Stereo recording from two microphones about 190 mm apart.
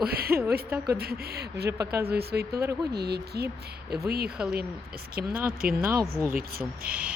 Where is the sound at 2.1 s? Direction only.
55° right (ahead or behind).